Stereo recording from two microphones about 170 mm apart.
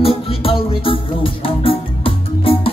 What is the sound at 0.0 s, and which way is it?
Music, 35° left (ahead or behind).